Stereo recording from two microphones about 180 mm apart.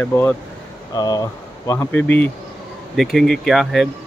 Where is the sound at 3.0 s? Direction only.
Centre (ahead or behind).